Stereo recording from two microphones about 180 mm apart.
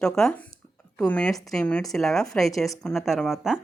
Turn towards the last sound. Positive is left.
turn(degrees=0)  # may be behind; listen again after turning